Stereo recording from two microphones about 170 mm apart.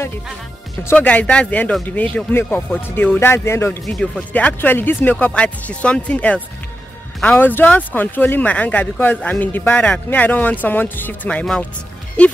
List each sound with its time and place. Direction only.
0.8 s speech: 10° left (ahead or behind)
3.8 s speech: 5° left (ahead or behind)